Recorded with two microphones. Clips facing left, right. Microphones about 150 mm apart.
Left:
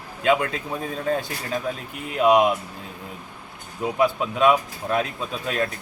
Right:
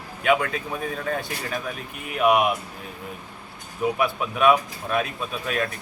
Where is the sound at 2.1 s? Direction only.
25° left (ahead or behind).